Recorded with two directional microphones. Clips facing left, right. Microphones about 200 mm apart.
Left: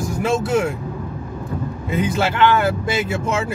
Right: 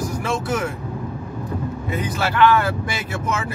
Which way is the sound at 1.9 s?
25° left (ahead or behind).